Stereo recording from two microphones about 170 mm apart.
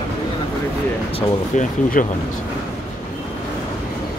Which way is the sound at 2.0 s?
55° left (ahead or behind).